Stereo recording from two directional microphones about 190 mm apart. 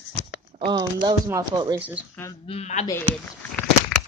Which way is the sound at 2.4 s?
35° left (ahead or behind).